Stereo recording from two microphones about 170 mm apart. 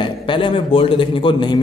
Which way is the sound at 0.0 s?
30° left (ahead or behind).